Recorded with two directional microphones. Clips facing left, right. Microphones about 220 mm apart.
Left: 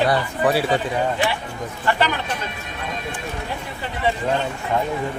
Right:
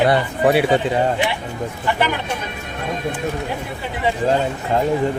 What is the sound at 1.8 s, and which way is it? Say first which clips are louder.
Speech: even; 10° right (ahead or behind).